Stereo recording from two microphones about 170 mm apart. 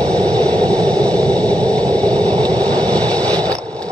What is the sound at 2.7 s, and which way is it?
Vehicle, 25° right (ahead or behind).